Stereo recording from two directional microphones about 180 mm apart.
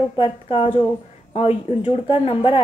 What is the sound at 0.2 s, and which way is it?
A woman's voice, 30° left (ahead or behind).